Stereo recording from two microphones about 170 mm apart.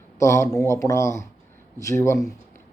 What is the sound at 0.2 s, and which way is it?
Speech, 15° left (ahead or behind).